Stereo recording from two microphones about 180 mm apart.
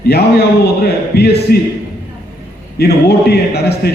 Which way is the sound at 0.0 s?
60° left (ahead or behind).